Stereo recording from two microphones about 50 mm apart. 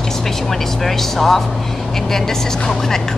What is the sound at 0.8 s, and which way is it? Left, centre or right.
Speech, centre.